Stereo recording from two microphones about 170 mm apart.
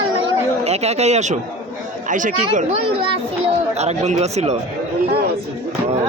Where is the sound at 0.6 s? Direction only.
40° right (ahead or behind).